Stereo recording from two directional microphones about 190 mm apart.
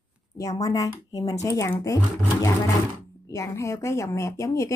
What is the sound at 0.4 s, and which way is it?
Speech, 20° left (ahead or behind).